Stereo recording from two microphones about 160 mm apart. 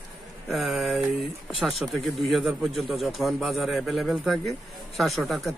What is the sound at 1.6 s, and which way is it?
Speech, centre (ahead or behind).